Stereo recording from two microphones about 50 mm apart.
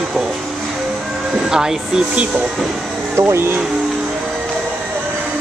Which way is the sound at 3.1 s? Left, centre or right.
Right.